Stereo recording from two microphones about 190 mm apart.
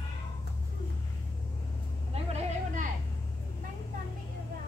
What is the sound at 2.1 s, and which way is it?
Vehicle, 35° right (ahead or behind).